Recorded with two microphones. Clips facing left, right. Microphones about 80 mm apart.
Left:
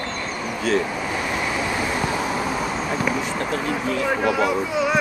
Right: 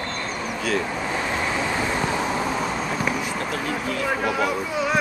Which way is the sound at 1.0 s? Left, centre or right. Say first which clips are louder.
Even; centre.